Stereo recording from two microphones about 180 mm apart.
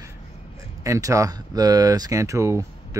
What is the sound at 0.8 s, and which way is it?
Speech, 15° right (ahead or behind).